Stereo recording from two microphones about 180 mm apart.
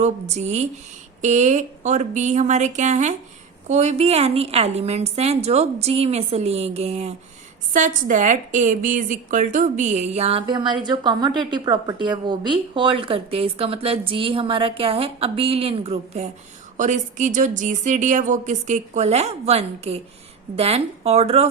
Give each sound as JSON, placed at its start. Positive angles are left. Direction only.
{"t": 0.0, "sound": "a woman's voice", "side_deg": -40}
{"t": 7.7, "sound": "a woman's voice", "side_deg": -45}